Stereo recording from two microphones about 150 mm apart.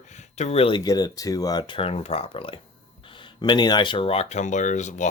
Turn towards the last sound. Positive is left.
turn(degrees=55)  # may be behind; listen again after turning